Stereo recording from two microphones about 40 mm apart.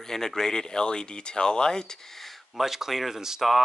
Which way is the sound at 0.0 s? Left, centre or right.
Centre.